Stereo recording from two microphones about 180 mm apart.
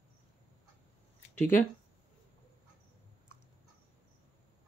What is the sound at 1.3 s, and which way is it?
Speech, 10° left (ahead or behind).